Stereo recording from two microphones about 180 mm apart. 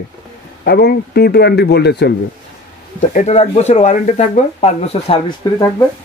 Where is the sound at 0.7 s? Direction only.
60° left (ahead or behind).